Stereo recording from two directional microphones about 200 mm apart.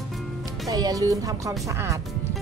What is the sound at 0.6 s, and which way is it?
Speech, 20° right (ahead or behind).